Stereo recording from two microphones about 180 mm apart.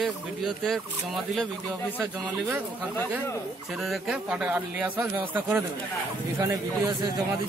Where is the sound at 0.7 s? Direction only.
Centre (ahead or behind).